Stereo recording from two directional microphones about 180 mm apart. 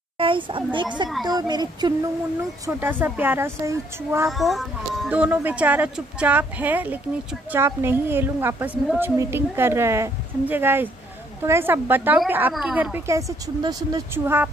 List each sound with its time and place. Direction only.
0.2 s a child's voice: 30° right (ahead or behind)
2.6 s a woman's voice: 10° right (ahead or behind)
4.3 s a woman's voice: centre (ahead or behind)